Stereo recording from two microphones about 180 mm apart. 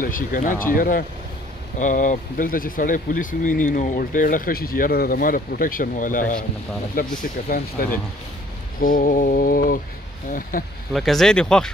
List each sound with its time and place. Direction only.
0.0 s speech: 50° left (ahead or behind)
10.9 s speech: centre (ahead or behind)